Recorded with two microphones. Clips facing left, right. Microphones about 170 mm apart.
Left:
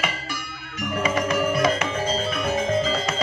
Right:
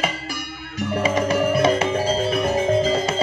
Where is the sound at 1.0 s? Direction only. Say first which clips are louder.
Right 3 dB; 30° right (ahead or behind).